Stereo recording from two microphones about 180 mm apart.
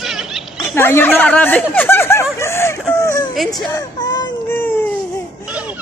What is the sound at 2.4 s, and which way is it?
Whimper, 15° left (ahead or behind).